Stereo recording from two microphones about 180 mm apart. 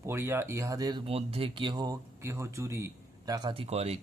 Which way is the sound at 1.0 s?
30° right (ahead or behind).